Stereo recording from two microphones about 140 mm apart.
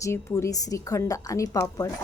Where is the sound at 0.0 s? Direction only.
20° left (ahead or behind).